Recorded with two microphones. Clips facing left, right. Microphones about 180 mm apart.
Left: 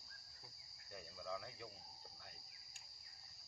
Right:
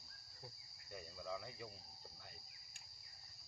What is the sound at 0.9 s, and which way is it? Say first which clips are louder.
Cricket: right 1 dB; 5° right (ahead or behind).